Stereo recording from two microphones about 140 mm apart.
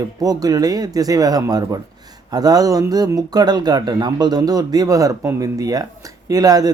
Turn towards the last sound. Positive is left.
turn(degrees=-25)  # may be behind; listen again after turning